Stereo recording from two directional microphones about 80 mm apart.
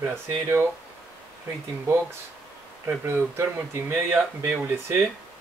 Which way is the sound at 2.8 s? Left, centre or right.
Right.